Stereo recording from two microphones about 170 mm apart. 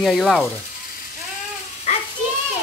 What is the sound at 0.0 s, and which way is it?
Speech, centre (ahead or behind).